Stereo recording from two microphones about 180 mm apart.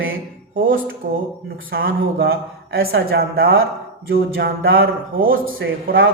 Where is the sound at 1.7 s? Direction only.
60° right (ahead or behind); by 3.6 s 90° right.